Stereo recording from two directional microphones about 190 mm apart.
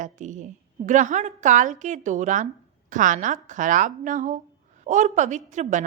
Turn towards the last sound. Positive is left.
turn(degrees=-40)  # may be behind; listen again after turning